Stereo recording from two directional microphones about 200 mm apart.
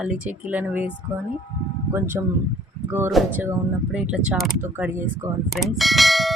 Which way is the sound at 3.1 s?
Centre (ahead or behind).